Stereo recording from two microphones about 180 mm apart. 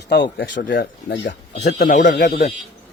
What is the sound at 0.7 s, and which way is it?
Speech, 60° left (ahead or behind).